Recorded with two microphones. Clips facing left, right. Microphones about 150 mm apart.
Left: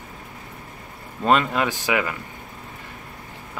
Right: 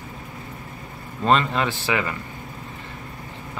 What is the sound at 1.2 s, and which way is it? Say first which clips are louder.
Speech: even; 10° left (ahead or behind).